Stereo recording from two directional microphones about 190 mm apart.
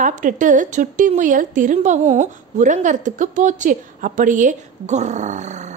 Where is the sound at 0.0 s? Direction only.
40° right (ahead or behind).